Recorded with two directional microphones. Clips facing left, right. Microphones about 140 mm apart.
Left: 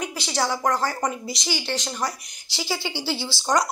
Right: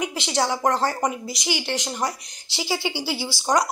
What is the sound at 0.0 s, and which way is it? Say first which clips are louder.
Speech: right 2 dB; 20° right (ahead or behind).